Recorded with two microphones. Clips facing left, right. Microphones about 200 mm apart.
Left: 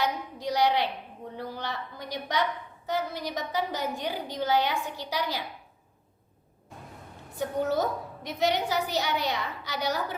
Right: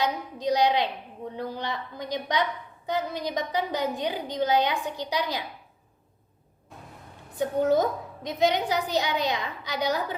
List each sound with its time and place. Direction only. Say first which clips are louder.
0.0 s a woman's voice: right 2 dB; 15° right (ahead or behind)
7.8 s a woman's voice: right 3 dB; 15° right (ahead or behind)